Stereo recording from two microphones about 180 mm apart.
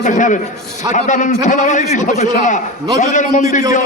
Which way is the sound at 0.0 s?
45° left (ahead or behind).